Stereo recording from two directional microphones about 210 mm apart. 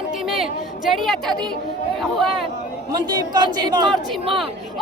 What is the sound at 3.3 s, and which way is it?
Speech, 20° right (ahead or behind).